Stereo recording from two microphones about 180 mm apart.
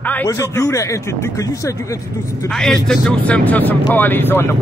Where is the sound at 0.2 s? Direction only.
15° left (ahead or behind).